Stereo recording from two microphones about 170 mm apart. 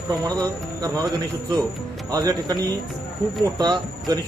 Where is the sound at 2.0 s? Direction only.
20° right (ahead or behind).